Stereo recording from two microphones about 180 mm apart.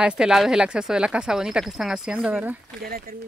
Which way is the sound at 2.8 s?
55° right (ahead or behind).